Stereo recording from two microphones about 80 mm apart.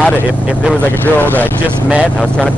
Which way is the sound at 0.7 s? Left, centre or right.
Left.